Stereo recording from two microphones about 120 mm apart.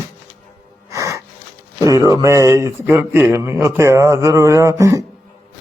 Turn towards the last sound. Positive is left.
turn(degrees=-25)  # may be behind; listen again after turning